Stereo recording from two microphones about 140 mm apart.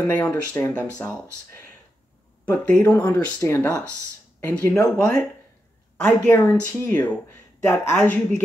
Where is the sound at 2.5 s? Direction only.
10° left (ahead or behind).